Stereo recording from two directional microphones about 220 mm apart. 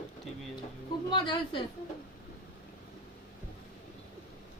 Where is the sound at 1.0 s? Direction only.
20° left (ahead or behind).